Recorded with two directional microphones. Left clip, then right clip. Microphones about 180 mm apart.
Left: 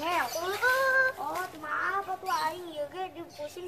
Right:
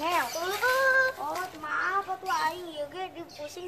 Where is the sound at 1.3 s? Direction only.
10° right (ahead or behind).